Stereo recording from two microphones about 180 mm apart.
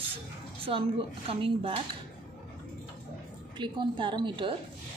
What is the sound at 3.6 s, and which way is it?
A woman's voice, 25° right (ahead or behind).